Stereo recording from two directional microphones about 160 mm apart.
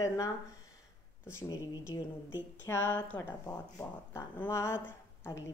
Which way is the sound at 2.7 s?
15° left (ahead or behind).